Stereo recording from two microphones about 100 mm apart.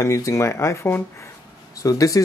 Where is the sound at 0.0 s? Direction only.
35° left (ahead or behind).